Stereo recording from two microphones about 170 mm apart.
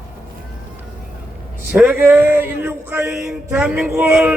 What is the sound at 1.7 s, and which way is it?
Speech, 10° right (ahead or behind).